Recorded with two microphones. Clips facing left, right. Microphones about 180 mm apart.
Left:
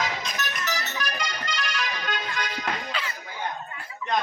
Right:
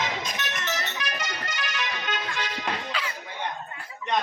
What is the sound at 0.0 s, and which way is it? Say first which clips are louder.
Music: even; 25° right (ahead or behind).